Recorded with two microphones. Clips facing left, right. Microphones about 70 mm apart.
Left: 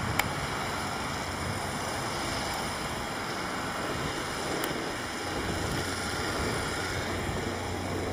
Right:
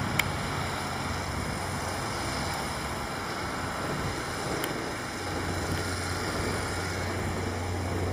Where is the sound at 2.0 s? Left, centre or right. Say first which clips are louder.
Even; right.